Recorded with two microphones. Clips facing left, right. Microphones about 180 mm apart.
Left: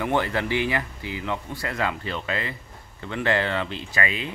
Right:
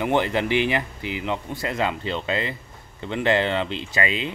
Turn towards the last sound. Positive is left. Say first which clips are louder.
# right 3 dB
turn(degrees=-25)  # may be behind; listen again after turning